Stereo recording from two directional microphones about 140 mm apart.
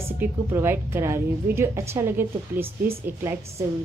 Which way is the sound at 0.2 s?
15° right (ahead or behind).